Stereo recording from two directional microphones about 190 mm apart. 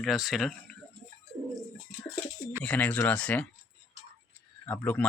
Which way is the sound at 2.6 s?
10° left (ahead or behind).